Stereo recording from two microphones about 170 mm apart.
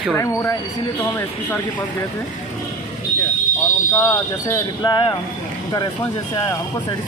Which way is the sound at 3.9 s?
20° left (ahead or behind).